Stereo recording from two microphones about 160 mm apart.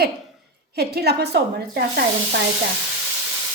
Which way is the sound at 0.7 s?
85° right.